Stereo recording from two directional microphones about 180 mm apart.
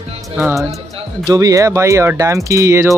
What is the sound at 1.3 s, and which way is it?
Speech, 20° right (ahead or behind).